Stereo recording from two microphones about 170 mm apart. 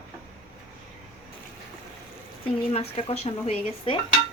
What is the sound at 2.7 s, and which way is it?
Speech, 35° left (ahead or behind).